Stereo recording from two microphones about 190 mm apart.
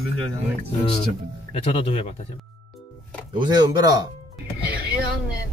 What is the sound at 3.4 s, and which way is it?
Speech, 20° right (ahead or behind).